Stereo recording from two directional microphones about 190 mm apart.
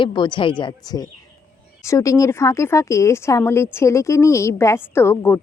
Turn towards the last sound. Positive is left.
turn(degrees=10)  # may be behind; listen again after turning